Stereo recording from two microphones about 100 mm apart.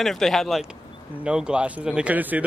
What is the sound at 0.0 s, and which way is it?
Speech, 5° left (ahead or behind).